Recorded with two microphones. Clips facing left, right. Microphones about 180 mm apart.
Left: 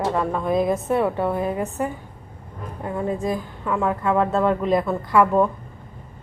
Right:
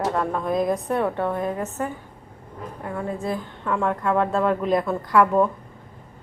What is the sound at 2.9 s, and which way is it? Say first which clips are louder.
Speech: left 3 dB; 20° left (ahead or behind).